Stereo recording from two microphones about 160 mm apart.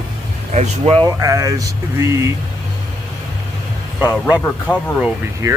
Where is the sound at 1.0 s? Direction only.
20° right (ahead or behind).